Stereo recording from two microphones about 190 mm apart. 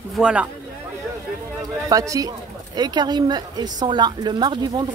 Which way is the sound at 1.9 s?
20° right (ahead or behind).